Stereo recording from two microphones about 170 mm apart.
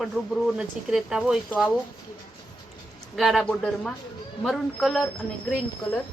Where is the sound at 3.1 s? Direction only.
Centre (ahead or behind).